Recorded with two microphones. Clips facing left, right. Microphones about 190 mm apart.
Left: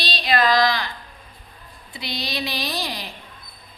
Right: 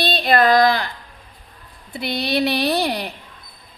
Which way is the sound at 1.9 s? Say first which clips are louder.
Right 8 dB; 55° right (ahead or behind).